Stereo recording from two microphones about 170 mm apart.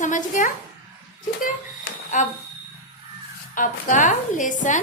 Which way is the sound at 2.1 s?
45° left (ahead or behind).